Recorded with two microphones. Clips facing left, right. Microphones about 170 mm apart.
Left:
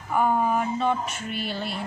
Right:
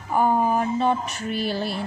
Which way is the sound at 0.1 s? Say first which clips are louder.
Right 2 dB; 35° right (ahead or behind).